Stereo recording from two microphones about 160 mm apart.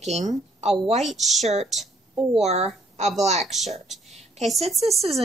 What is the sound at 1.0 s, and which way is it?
Speech, centre (ahead or behind).